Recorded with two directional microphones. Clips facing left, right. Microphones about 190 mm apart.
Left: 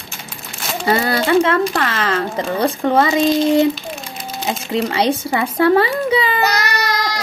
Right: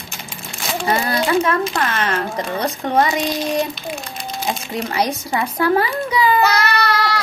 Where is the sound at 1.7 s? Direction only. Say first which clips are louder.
Left 2 dB; 90° left.